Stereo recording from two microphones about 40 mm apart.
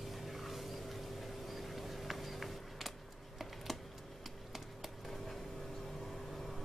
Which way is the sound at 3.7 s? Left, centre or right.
Centre.